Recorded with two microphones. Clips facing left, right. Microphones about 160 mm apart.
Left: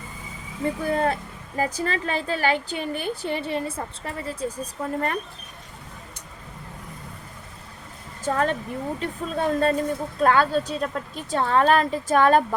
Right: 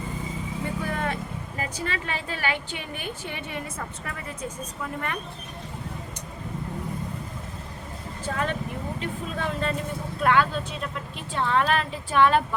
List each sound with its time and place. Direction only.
0.6 s speech: 35° left (ahead or behind)
8.2 s speech: 40° left (ahead or behind)